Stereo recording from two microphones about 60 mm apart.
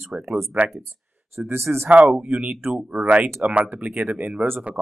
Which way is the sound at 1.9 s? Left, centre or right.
Right.